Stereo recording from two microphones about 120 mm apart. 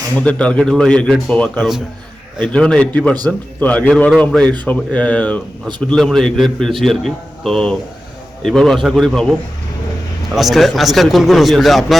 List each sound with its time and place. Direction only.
0.2 s a man's voice: 10° left (ahead or behind)
10.3 s a man's voice: centre (ahead or behind)